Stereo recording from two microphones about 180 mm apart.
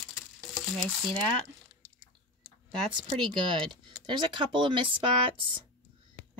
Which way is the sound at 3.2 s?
25° right (ahead or behind).